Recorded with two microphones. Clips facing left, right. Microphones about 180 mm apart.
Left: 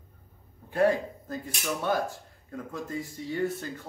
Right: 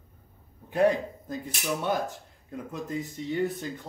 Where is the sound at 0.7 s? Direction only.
20° right (ahead or behind).